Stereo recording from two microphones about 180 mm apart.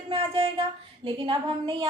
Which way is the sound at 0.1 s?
30° right (ahead or behind).